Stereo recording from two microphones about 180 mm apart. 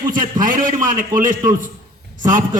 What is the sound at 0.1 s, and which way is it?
A man's voice, 50° right (ahead or behind).